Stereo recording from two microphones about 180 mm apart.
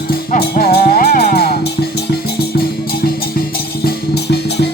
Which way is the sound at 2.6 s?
60° left (ahead or behind).